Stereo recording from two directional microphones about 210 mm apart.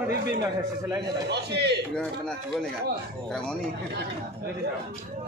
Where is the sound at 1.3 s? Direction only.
55° right (ahead or behind).